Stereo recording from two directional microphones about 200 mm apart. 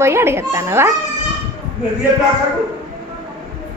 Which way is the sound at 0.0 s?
10° right (ahead or behind).